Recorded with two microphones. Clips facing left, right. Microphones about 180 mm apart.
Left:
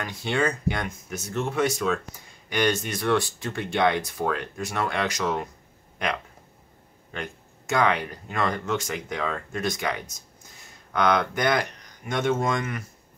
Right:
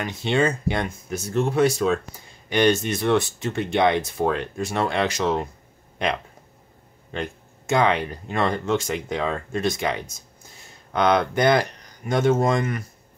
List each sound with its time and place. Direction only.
0.0 s speech: 20° right (ahead or behind)